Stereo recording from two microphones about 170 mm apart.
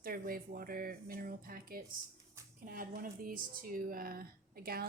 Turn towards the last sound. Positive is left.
turn(degrees=-60)  # may be behind; listen again after turning